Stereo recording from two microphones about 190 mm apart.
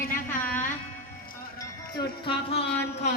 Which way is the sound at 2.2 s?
30° left (ahead or behind).